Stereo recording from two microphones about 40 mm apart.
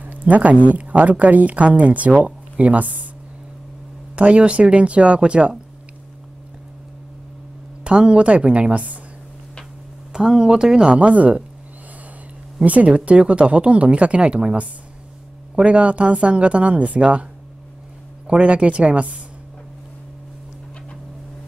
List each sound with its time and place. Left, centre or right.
0.0 s a woman's voice: right
4.1 s a woman's voice: right
7.8 s a woman's voice: right
10.1 s speech: centre
11.0 s a woman's voice: right
12.6 s a woman's voice: right